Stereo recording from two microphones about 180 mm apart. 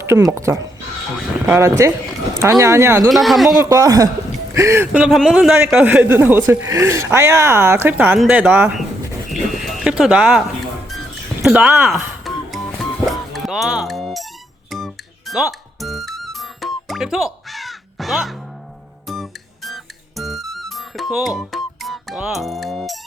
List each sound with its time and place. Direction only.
0.0 s a man's voice: 15° right (ahead or behind)
3.1 s speech: centre (ahead or behind)
3.6 s a man's voice: 20° right (ahead or behind)
4.9 s a man's voice: centre (ahead or behind)
9.3 s a sound: centre (ahead or behind)
10.0 s music: centre (ahead or behind)
11.4 s speech: 5° right (ahead or behind)
12.2 s music: centre (ahead or behind)